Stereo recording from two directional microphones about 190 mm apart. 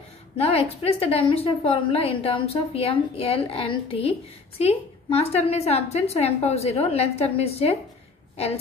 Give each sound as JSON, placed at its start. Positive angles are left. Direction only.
{"t": 0.4, "sound": "a woman's voice", "side_deg": 30}